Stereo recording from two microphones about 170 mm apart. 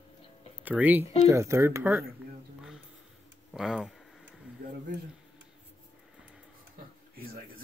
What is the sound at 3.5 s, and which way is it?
Speech, 5° right (ahead or behind).